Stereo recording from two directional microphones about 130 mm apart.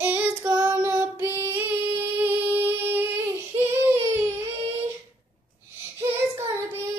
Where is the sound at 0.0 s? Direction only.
15° right (ahead or behind).